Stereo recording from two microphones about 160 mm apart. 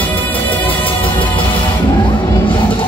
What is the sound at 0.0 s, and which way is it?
Music, 10° left (ahead or behind).